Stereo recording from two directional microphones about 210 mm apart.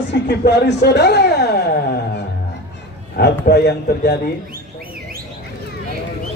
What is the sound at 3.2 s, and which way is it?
Speech, 50° left (ahead or behind).